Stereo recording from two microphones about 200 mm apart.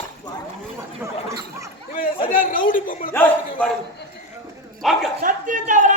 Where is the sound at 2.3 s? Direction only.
45° left (ahead or behind).